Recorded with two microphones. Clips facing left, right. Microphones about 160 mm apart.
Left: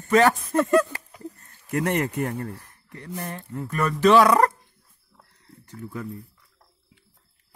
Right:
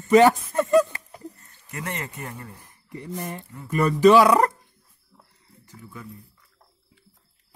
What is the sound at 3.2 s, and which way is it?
Speech, 10° right (ahead or behind).